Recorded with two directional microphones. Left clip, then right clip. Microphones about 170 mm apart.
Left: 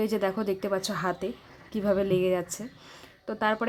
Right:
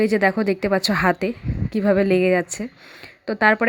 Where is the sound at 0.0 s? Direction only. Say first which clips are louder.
Right 9 dB; 20° right (ahead or behind).